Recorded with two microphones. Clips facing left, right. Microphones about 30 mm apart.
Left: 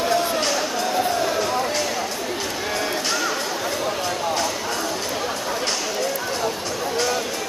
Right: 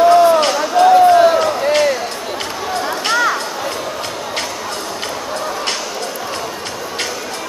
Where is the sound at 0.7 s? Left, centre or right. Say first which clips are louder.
Right 13 dB; right.